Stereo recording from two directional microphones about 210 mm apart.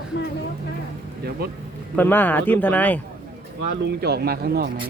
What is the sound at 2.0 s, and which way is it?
Speech, 10° left (ahead or behind).